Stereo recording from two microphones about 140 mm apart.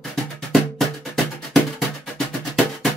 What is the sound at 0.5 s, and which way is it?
Music, centre (ahead or behind).